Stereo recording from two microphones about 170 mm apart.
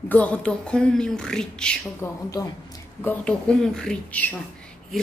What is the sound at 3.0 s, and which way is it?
Speech, 5° left (ahead or behind).